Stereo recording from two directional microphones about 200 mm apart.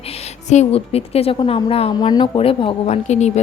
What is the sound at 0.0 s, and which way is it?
A woman's voice, 30° left (ahead or behind).